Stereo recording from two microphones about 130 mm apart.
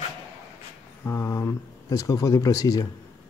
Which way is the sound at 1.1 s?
20° left (ahead or behind).